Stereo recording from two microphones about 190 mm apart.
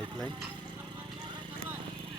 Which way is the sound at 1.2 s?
25° right (ahead or behind).